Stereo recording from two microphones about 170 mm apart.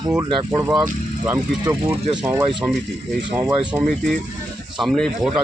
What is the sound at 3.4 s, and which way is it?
Speech, 25° right (ahead or behind).